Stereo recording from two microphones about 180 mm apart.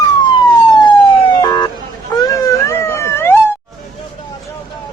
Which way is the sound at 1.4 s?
25° left (ahead or behind).